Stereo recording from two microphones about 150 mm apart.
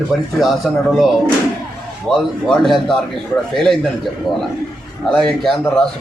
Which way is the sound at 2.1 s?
Centre (ahead or behind).